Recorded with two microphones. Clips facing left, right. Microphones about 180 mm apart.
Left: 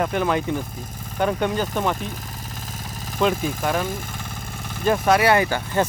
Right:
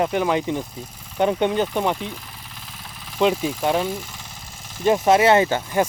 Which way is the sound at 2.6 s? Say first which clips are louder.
Left 6 dB; 45° left (ahead or behind).